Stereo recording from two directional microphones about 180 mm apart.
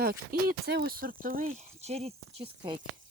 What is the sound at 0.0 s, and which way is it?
Speech, 55° right (ahead or behind).